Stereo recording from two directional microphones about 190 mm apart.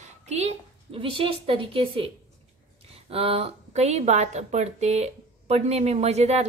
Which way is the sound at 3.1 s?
30° right (ahead or behind).